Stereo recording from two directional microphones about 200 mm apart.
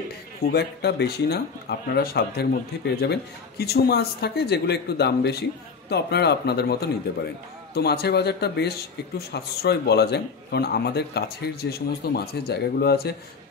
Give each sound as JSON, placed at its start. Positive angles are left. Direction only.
{"t": 0.4, "sound": "a man's voice", "side_deg": 55}